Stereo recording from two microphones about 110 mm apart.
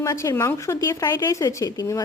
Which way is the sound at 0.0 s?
30° left (ahead or behind).